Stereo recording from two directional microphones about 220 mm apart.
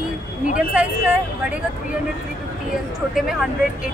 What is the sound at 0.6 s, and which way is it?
Speech, 5° right (ahead or behind).